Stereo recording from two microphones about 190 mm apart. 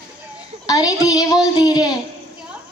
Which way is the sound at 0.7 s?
20° left (ahead or behind).